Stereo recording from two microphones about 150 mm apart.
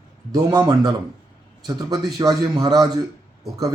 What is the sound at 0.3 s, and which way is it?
Speech, 25° right (ahead or behind).